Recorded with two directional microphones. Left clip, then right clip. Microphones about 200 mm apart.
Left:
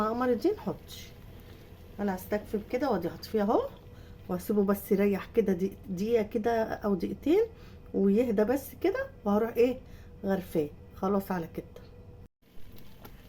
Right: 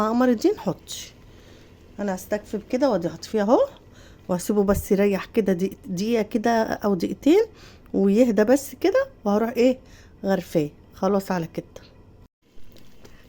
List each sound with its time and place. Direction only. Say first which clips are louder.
0.0 s a woman's voice: right 7 dB; 60° right (ahead or behind)
2.0 s a woman's voice: right 5 dB; 50° right (ahead or behind)